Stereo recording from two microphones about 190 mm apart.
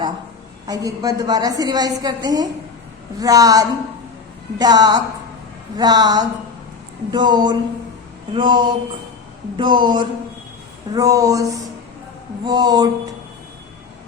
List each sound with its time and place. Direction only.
0.7 s a woman's voice: 20° right (ahead or behind)